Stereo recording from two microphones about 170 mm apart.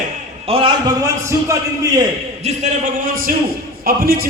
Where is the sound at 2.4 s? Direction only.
50° right (ahead or behind).